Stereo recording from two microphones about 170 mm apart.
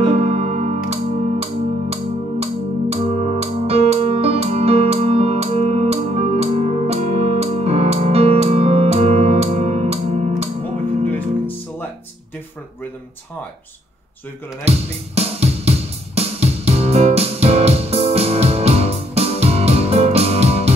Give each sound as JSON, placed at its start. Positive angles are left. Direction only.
{"t": 0.0, "sound": "music", "side_deg": -40}
{"t": 11.1, "sound": "music", "side_deg": 10}
{"t": 14.6, "sound": "speech", "side_deg": -35}
{"t": 16.2, "sound": "music", "side_deg": -35}